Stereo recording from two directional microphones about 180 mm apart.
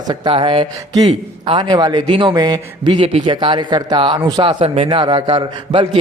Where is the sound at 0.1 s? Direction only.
25° right (ahead or behind).